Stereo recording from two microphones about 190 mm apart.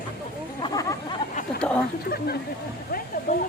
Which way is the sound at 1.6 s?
5° left (ahead or behind).